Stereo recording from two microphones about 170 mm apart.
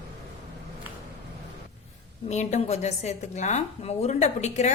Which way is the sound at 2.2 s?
40° left (ahead or behind).